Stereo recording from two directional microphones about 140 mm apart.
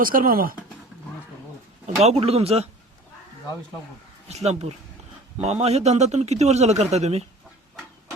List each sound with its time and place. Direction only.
0.0 s speech: 90° right
2.0 s a man's voice: 45° right (ahead or behind)
4.3 s a man's voice: 50° right (ahead or behind)